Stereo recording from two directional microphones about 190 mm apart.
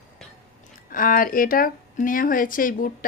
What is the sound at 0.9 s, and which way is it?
A woman's voice, 45° left (ahead or behind).